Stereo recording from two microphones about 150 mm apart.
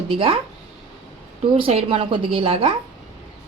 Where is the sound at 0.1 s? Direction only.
35° right (ahead or behind).